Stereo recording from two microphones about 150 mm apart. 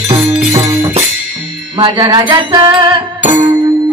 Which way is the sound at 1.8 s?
25° right (ahead or behind).